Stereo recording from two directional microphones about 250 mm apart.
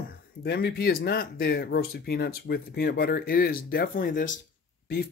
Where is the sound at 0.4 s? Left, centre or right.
Left.